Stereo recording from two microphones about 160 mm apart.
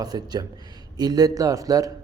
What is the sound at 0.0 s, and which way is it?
Speech, 25° right (ahead or behind).